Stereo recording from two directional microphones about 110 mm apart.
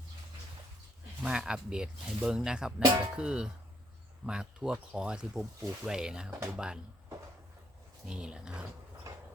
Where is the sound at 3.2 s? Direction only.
5° right (ahead or behind).